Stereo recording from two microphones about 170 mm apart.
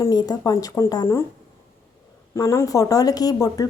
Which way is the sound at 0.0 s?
20° left (ahead or behind).